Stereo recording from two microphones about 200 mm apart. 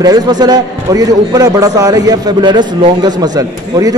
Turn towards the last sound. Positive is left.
turn(degrees=-20)  # may be behind; listen again after turning